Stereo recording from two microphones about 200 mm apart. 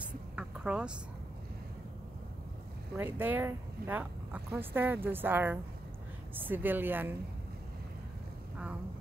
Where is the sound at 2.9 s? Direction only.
10° right (ahead or behind).